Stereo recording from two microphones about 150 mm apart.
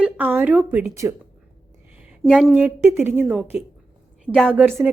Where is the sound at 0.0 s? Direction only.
10° right (ahead or behind).